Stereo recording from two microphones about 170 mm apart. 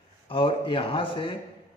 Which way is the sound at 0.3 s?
30° left (ahead or behind).